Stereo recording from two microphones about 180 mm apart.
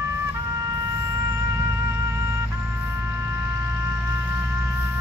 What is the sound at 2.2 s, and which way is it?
Music, 15° right (ahead or behind).